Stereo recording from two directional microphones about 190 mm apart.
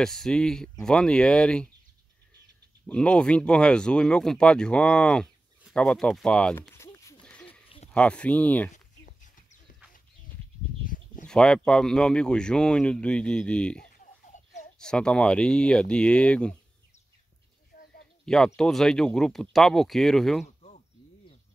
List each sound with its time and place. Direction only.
0.0 s speech: centre (ahead or behind)
2.9 s speech: 5° left (ahead or behind)
5.6 s a sound: centre (ahead or behind)
7.9 s speech: 5° left (ahead or behind)
8.7 s a sound: 40° left (ahead or behind)
10.8 s bird: 45° left (ahead or behind)
11.2 s speech: 5° left (ahead or behind)
14.3 s a sound: 40° left (ahead or behind)
14.8 s speech: 5° left (ahead or behind)
18.2 s speech: 5° left (ahead or behind)